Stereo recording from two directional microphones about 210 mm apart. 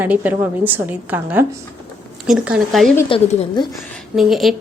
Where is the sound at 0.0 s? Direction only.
10° right (ahead or behind).